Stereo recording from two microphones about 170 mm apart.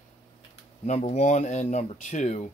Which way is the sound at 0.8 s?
40° left (ahead or behind).